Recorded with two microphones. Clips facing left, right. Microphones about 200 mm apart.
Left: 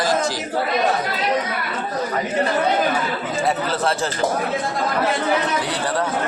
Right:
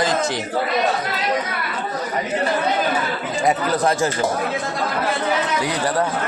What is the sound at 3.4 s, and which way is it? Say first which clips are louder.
Speech: right 3 dB; 15° right (ahead or behind).